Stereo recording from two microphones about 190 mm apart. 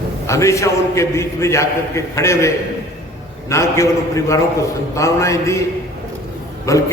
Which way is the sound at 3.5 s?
15° left (ahead or behind).